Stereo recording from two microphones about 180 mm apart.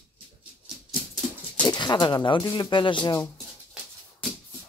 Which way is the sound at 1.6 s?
25° left (ahead or behind).